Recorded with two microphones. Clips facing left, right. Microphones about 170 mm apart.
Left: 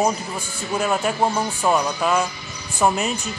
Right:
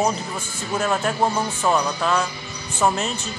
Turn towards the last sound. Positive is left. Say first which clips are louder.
# left 1 dB
turn(degrees=15)  # may be behind; listen again after turning